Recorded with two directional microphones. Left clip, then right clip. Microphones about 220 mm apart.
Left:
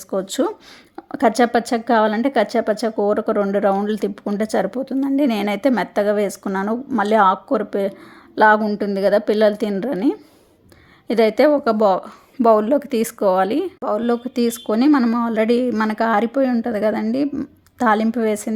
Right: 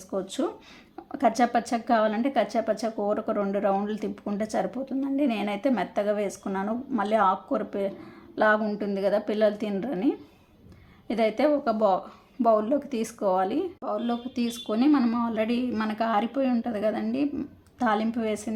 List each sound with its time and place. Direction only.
0.1 s a woman's voice: 45° left (ahead or behind)